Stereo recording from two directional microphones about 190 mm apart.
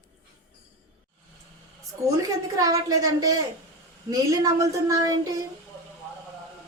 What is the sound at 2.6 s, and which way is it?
A child's voice, 20° right (ahead or behind).